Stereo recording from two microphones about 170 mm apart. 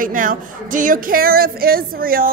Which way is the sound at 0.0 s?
50° right (ahead or behind).